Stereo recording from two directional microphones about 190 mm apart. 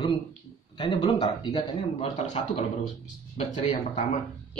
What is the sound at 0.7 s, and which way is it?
A man's voice, 25° left (ahead or behind).